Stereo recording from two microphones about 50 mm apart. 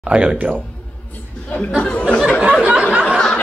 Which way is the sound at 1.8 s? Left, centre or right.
Left.